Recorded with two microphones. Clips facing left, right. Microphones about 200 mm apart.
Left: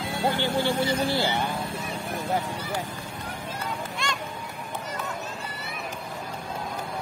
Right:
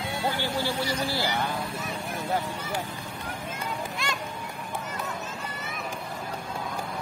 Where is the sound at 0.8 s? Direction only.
20° left (ahead or behind).